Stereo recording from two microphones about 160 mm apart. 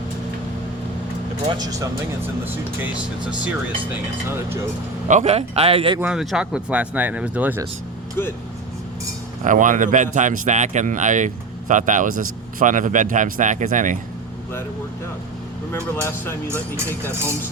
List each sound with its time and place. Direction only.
1.5 s speech: 25° right (ahead or behind)
5.0 s a man's voice: 45° right (ahead or behind)
6.0 s speech: 5° right (ahead or behind)
9.4 s speech: 55° right (ahead or behind)
15.7 s speech: 15° left (ahead or behind)
16.5 s speech: 15° right (ahead or behind)